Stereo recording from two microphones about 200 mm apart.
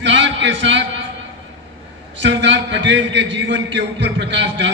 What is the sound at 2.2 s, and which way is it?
A man's voice, 65° right (ahead or behind).